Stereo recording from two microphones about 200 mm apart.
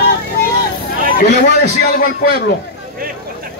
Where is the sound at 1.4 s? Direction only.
45° left (ahead or behind).